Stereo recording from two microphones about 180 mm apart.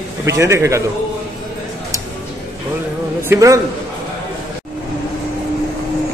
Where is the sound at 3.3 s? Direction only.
20° right (ahead or behind).